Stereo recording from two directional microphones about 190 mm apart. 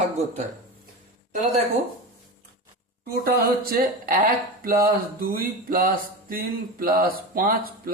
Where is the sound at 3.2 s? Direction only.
50° right (ahead or behind).